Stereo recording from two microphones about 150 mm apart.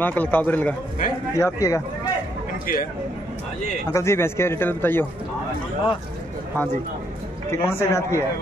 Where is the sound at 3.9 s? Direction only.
20° left (ahead or behind).